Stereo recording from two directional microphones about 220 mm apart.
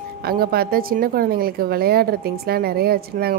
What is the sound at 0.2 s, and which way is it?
A woman's voice, 45° right (ahead or behind).